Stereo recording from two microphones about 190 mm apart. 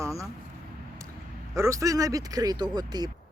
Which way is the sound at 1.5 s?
15° right (ahead or behind).